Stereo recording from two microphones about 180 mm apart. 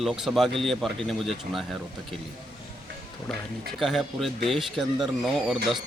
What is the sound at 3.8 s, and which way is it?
Speech, centre (ahead or behind).